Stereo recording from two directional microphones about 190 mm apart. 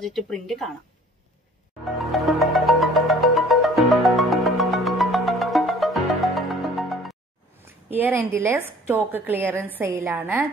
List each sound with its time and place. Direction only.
0.0 s speech: centre (ahead or behind)
1.9 s music: centre (ahead or behind)
7.6 s a woman's voice: 10° right (ahead or behind)